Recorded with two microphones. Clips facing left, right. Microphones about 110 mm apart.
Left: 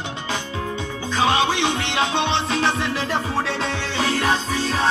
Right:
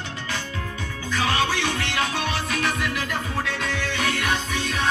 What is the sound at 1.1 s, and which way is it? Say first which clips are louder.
Music: left 4 dB; 25° left (ahead or behind).